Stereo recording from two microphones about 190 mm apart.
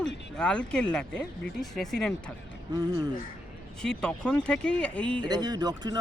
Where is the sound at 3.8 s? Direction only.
5° left (ahead or behind).